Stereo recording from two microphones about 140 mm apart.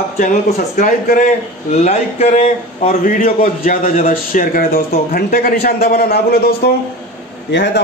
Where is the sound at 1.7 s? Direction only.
50° left (ahead or behind).